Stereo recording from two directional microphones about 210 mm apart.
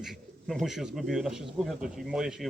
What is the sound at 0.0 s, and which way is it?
Speech, centre (ahead or behind).